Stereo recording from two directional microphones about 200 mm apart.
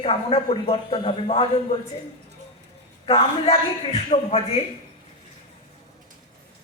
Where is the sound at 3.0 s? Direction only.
30° left (ahead or behind).